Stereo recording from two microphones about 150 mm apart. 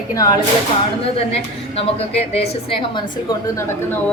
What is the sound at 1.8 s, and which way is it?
Speech, 40° left (ahead or behind).